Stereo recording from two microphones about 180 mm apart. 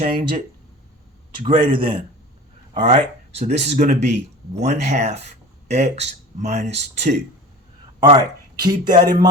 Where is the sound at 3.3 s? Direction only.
35° right (ahead or behind).